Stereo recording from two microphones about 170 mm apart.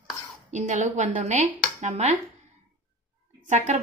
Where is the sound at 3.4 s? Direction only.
45° right (ahead or behind).